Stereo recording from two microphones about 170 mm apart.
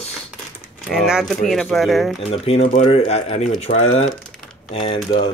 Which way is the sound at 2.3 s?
35° left (ahead or behind).